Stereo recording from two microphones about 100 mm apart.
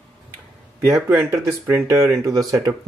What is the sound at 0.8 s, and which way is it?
Speech, 25° right (ahead or behind).